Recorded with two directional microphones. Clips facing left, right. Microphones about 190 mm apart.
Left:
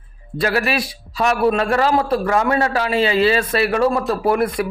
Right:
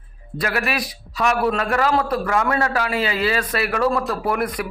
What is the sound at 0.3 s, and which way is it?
A man's voice, 30° left (ahead or behind).